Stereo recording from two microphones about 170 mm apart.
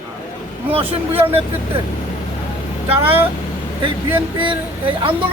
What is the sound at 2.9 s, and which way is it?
Speech, 35° right (ahead or behind).